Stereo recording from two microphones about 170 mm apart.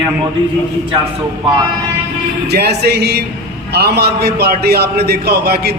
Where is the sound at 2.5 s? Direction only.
75° right (ahead or behind).